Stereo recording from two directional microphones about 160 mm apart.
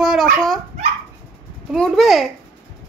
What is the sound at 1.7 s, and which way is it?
Speech, centre (ahead or behind).